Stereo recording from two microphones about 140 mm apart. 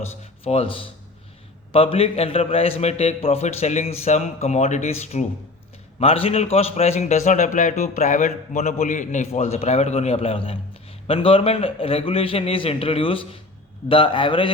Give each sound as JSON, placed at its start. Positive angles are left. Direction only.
{"t": 0.4, "sound": "a man's voice", "side_deg": 45}